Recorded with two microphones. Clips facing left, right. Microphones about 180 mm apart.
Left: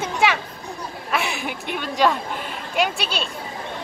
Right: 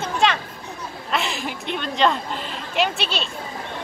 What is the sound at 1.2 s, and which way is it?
Speech, 60° left (ahead or behind).